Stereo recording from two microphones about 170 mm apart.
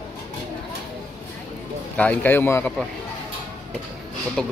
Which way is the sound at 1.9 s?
10° left (ahead or behind).